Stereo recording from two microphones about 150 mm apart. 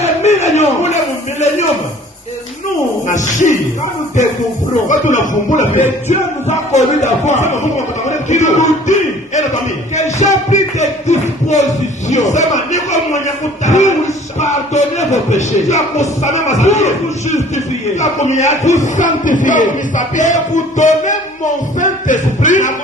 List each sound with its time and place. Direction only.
0.2 s a sound: 50° left (ahead or behind)
3.1 s speech: 55° left (ahead or behind)
4.9 s speech: 55° left (ahead or behind)
8.0 s a sound: 55° left (ahead or behind)
12.0 s a man's voice: 50° left (ahead or behind)
14.3 s music: 50° left (ahead or behind)
16.2 s speech: 50° left (ahead or behind)